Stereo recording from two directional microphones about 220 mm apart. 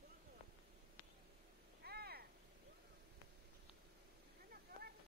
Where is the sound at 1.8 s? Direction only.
45° right (ahead or behind).